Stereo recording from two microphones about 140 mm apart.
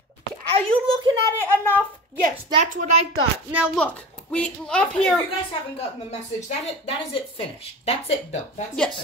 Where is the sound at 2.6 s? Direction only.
65° right (ahead or behind).